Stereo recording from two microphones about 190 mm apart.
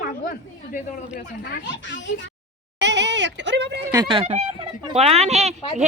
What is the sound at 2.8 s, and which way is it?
Speech, 65° right (ahead or behind).